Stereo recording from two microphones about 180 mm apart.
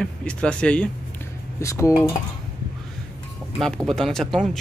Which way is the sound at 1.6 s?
15° left (ahead or behind).